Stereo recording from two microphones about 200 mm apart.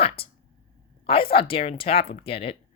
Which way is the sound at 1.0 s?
25° left (ahead or behind).